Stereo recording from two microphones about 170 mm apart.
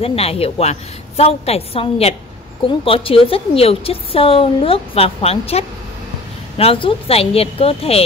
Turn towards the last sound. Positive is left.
turn(degrees=35)  # may be behind; listen again after turning